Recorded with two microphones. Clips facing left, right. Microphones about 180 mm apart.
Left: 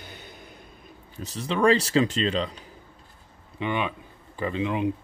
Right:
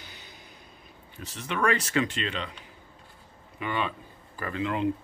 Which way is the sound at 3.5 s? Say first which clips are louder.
Left 3 dB; 20° left (ahead or behind).